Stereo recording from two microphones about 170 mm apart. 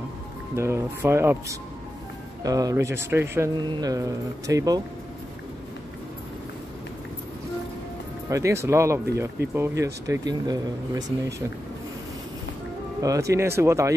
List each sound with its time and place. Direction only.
0.6 s speech: 15° right (ahead or behind)
3.5 s speech: 25° right (ahead or behind)
8.3 s speech: 15° right (ahead or behind)
13.0 s speech: 20° right (ahead or behind)